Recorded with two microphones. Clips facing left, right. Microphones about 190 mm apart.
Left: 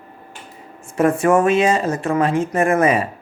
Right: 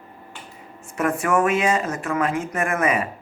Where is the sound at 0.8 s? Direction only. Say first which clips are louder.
Left 7 dB; 30° left (ahead or behind).